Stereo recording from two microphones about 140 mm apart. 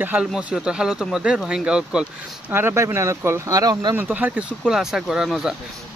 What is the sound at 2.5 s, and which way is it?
Speech, 20° right (ahead or behind).